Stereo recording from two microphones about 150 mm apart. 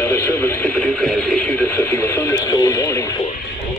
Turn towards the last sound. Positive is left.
turn(degrees=20)  # may be behind; listen again after turning